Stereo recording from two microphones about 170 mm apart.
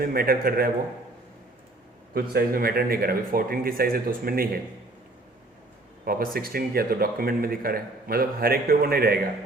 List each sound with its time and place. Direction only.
0.0 s a man's voice: 60° right (ahead or behind)
2.3 s a man's voice: 60° right (ahead or behind)
6.1 s a man's voice: 60° right (ahead or behind)